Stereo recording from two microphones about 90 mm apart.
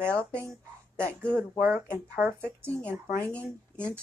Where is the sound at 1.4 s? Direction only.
20° right (ahead or behind).